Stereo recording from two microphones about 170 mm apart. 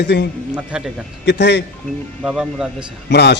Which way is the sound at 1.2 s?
90° left.